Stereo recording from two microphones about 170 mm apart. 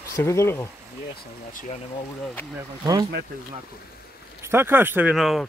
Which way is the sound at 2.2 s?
10° left (ahead or behind).